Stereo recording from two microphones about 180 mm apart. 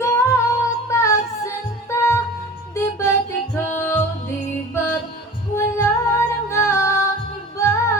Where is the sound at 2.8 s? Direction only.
15° left (ahead or behind).